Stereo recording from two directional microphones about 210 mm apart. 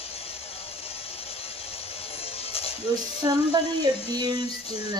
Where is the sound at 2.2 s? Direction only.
25° left (ahead or behind).